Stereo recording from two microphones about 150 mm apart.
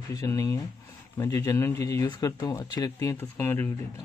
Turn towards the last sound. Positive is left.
turn(degrees=15)  # may be behind; listen again after turning